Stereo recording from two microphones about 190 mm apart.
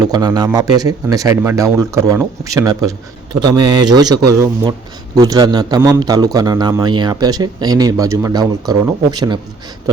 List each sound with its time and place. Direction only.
0.0 s a man's voice: 20° right (ahead or behind)